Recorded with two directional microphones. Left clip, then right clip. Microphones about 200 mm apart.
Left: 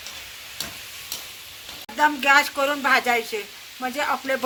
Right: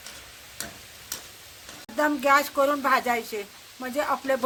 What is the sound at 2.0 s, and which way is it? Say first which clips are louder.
Speech: left 4 dB; 55° right (ahead or behind).